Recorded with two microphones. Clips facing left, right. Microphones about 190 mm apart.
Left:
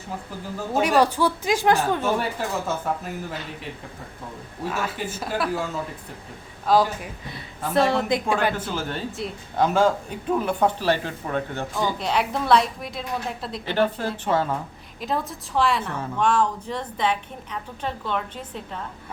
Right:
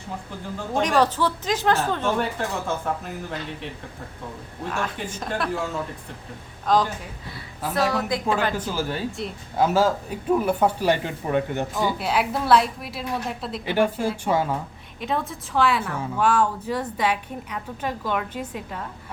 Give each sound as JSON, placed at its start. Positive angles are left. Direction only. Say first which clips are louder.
{"t": 0.7, "sound": "a woman's voice", "louder": "left 1 dB", "side_deg": 10}
{"t": 4.6, "sound": "a woman's voice", "louder": "left 1 dB", "side_deg": 5}
{"t": 6.7, "sound": "a woman's voice", "louder": "left 2 dB", "side_deg": 5}
{"t": 7.7, "sound": "a woman's voice", "louder": "left 3 dB", "side_deg": 25}
{"t": 8.3, "sound": "a woman's voice", "louder": "right 1 dB", "side_deg": 10}
{"t": 8.5, "sound": "a woman's voice", "louder": "right 2 dB", "side_deg": -10}
{"t": 11.8, "sound": "a woman's voice", "louder": "left 1 dB", "side_deg": -5}
{"t": 13.7, "sound": "a woman's voice", "louder": "right 1 dB", "side_deg": -10}
{"t": 15.0, "sound": "a woman's voice", "louder": "even", "side_deg": 0}